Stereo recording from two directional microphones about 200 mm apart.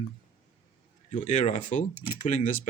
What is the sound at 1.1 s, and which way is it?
Speech, 30° left (ahead or behind).